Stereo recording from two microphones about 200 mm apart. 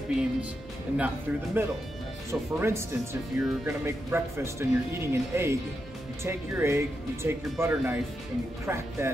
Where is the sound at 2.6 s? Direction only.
15° right (ahead or behind).